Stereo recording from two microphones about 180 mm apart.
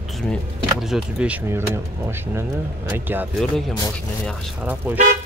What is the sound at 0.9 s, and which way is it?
Speech, 5° right (ahead or behind).